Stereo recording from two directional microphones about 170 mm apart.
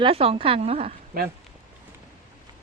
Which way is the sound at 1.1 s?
60° right (ahead or behind).